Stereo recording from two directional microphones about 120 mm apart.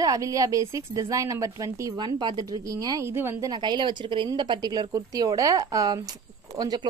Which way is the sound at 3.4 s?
35° right (ahead or behind).